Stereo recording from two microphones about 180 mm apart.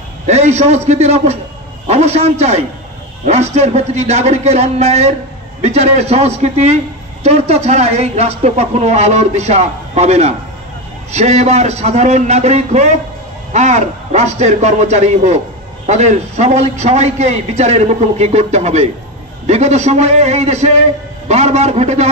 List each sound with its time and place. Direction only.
0.3 s speech: 40° right (ahead or behind)